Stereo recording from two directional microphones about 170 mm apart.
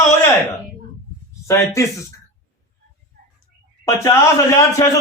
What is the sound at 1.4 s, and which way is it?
Speech, 15° left (ahead or behind).